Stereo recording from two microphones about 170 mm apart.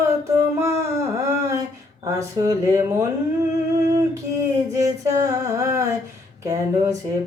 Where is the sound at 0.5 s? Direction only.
15° right (ahead or behind).